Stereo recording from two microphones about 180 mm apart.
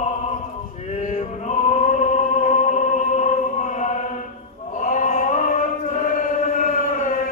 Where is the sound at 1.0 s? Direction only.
40° left (ahead or behind).